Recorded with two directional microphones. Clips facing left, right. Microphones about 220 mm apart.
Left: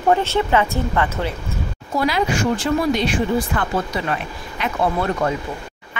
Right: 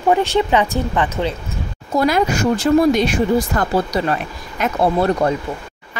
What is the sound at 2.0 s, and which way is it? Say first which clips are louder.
Speech: right 3 dB; 45° right (ahead or behind).